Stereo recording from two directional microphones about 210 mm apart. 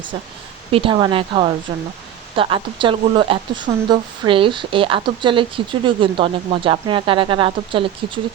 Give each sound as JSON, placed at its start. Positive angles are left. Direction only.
{"t": 0.7, "sound": "speech", "side_deg": -25}